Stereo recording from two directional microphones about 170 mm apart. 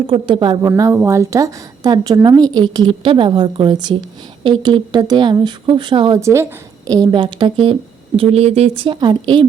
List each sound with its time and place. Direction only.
0.1 s a woman's voice: 30° right (ahead or behind)
0.7 s a woman's voice: 15° right (ahead or behind); by 6.1 s 30° right (ahead or behind)
6.1 s a woman's voice: 15° right (ahead or behind)